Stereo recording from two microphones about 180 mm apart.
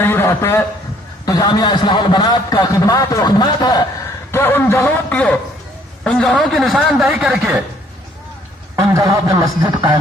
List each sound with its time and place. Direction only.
0.0 s a sound: 10° left (ahead or behind)
1.2 s a man's voice: 20° left (ahead or behind)
4.3 s a man's voice: 10° left (ahead or behind); by 7.6 s 5° right (ahead or behind)
8.7 s a man's voice: 15° right (ahead or behind)